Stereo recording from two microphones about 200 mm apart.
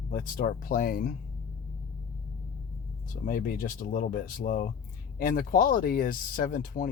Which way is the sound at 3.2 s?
45° left (ahead or behind).